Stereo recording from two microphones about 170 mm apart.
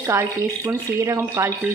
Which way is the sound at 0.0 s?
15° right (ahead or behind).